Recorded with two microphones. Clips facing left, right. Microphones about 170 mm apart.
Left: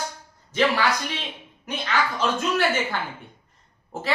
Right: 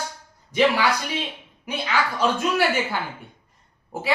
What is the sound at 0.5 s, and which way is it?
A woman's voice, 15° right (ahead or behind).